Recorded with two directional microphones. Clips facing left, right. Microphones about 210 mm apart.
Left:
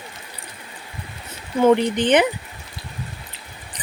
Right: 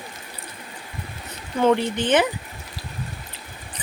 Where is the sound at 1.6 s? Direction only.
15° left (ahead or behind).